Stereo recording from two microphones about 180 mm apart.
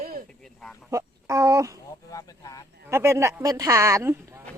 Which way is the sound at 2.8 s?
15° right (ahead or behind).